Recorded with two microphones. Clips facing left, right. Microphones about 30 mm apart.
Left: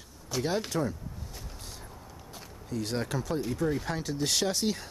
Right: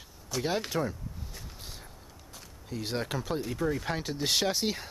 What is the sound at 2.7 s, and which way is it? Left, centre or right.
Speech, centre.